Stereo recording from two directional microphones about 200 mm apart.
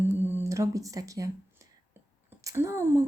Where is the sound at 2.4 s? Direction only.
15° right (ahead or behind).